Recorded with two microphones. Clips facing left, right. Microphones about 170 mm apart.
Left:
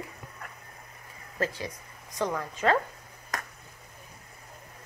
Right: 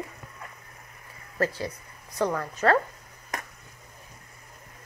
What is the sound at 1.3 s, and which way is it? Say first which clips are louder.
A woman's voice: right 4 dB; 15° left (ahead or behind).